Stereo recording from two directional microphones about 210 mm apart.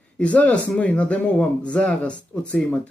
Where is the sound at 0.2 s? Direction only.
5° left (ahead or behind).